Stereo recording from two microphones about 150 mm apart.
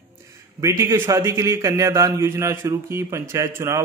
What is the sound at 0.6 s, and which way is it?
A man's voice, 20° right (ahead or behind).